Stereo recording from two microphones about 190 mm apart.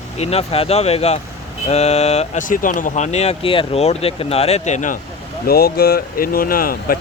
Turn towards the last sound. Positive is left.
turn(degrees=50)  # may be behind; listen again after turning